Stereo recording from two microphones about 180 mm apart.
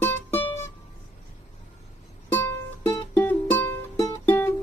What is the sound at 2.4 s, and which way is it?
Music, 10° left (ahead or behind).